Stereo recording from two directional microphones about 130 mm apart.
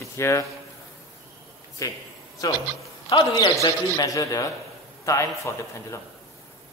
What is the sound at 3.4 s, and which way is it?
A man's voice, 30° left (ahead or behind).